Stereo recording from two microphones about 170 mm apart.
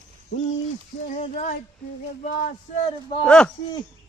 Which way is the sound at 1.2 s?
40° left (ahead or behind).